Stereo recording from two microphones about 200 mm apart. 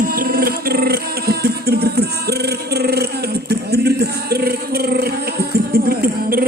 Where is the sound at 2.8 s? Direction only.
55° right (ahead or behind).